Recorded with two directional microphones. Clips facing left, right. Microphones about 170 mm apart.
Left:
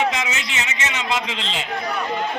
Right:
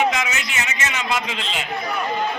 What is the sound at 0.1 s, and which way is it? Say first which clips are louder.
A man's voice: right 1 dB; 25° left (ahead or behind).